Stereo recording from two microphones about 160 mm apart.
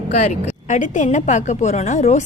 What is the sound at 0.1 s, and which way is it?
A woman's voice, 45° left (ahead or behind).